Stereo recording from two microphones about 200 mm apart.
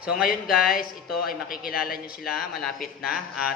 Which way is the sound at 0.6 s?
45° left (ahead or behind).